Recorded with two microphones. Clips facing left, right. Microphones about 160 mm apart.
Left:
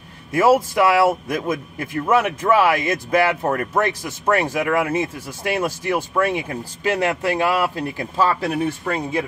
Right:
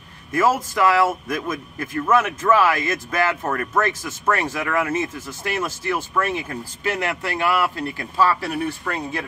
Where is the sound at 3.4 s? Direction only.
30° left (ahead or behind).